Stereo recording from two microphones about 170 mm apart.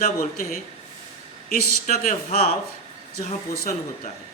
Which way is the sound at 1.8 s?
45° left (ahead or behind).